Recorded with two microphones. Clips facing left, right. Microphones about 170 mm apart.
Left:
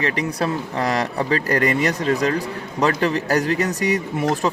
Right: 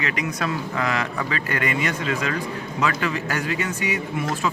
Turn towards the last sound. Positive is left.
turn(degrees=40)  # may be behind; listen again after turning